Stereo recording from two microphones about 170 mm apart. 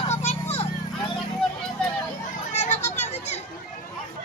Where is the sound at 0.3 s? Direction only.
40° left (ahead or behind).